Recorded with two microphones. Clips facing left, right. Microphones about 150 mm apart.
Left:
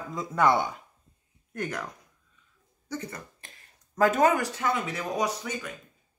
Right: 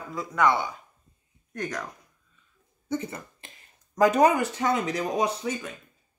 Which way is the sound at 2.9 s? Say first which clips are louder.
Right 5 dB; 25° right (ahead or behind).